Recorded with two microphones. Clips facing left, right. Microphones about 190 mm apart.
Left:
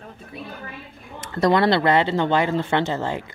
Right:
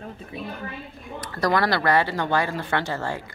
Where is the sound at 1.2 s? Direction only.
25° left (ahead or behind).